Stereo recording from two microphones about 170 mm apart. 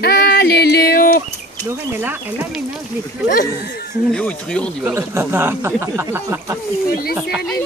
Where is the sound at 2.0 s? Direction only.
10° right (ahead or behind).